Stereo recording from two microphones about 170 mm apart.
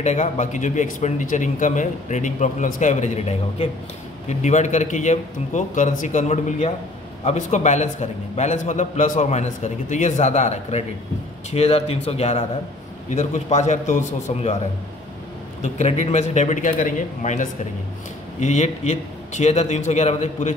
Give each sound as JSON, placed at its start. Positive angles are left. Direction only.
{"t": 0.0, "sound": "a man's voice", "side_deg": 45}
{"t": 15.6, "sound": "a man's voice", "side_deg": 40}